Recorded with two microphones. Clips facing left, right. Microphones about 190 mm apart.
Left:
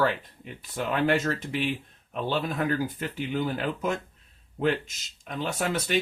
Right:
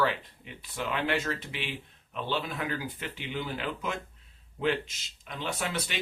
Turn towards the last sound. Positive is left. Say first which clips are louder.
# left 7 dB
turn(degrees=45)  # may be behind; listen again after turning